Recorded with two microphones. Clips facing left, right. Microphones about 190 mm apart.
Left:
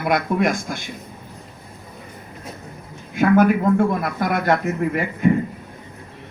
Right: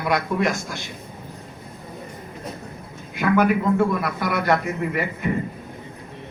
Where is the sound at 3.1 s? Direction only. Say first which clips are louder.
Left 4 dB; 45° left (ahead or behind).